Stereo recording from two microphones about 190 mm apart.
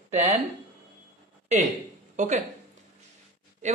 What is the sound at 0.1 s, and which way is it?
Speech, 35° right (ahead or behind).